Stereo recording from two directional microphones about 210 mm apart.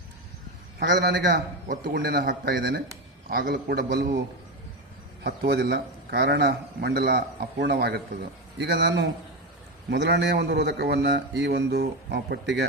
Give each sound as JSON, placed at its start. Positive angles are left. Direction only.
{"t": 0.8, "sound": "a man's voice", "side_deg": -55}
{"t": 1.2, "sound": "a man's voice", "side_deg": -40}
{"t": 5.2, "sound": "a man's voice", "side_deg": -50}